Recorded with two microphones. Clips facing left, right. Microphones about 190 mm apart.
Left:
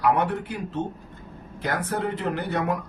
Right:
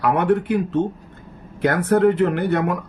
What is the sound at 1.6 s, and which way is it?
Speech, 60° right (ahead or behind).